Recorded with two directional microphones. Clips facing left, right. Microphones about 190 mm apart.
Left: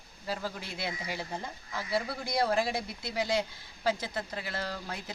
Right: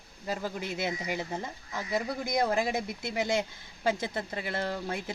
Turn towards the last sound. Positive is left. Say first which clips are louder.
# right 4 dB
turn(degrees=-25)  # may be behind; listen again after turning